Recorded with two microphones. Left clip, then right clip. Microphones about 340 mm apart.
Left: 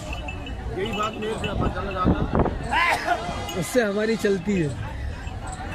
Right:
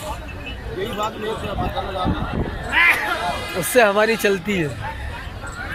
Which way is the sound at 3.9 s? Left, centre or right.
Right.